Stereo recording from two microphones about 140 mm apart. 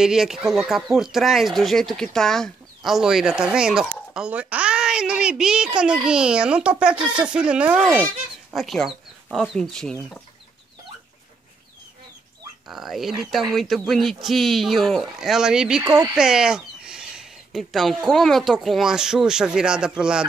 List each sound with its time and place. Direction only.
0.0 s a child's voice: 5° right (ahead or behind)
12.6 s speech: centre (ahead or behind)
15.9 s speech: 30° right (ahead or behind)
16.2 s a child's voice: 5° right (ahead or behind)